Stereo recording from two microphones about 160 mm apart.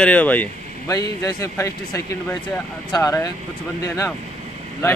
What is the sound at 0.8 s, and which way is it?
A man's voice, 20° left (ahead or behind).